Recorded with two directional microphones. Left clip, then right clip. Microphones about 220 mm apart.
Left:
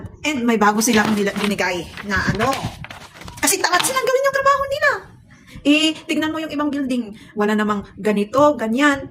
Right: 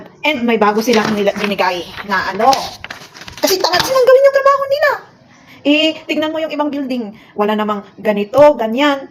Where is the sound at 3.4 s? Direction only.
45° left (ahead or behind).